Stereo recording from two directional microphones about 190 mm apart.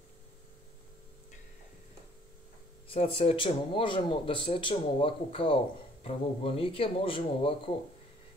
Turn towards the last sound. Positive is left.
turn(degrees=30)  # may be behind; listen again after turning